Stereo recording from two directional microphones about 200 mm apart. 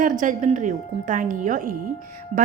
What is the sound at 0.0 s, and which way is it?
A woman's voice, 40° right (ahead or behind).